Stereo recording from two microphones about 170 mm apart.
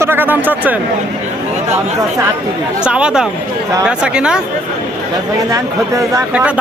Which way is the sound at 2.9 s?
5° right (ahead or behind).